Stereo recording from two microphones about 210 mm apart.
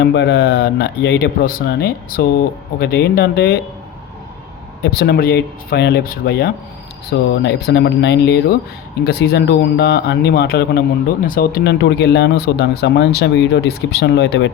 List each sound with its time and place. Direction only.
0.0 s speech: 55° left (ahead or behind)
4.8 s speech: 50° left (ahead or behind)